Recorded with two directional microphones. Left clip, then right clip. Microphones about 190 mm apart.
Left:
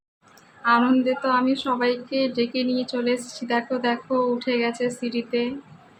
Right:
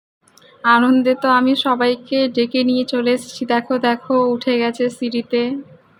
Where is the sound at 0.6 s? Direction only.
40° right (ahead or behind).